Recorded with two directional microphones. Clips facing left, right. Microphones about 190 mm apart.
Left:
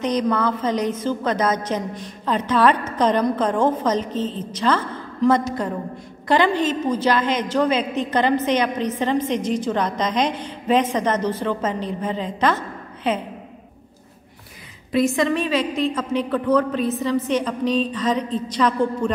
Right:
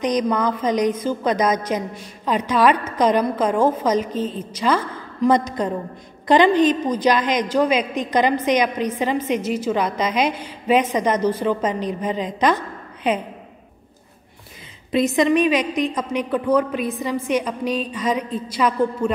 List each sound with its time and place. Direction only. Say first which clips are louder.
0.0 s a woman's voice: right 1 dB; 15° right (ahead or behind)
14.9 s a woman's voice: right 2 dB; 20° right (ahead or behind)